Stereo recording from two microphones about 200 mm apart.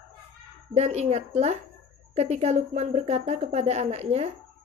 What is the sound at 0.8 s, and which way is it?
A woman's voice, 35° right (ahead or behind).